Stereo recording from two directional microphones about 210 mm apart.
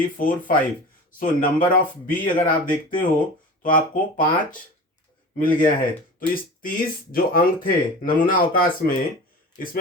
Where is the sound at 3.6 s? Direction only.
40° left (ahead or behind).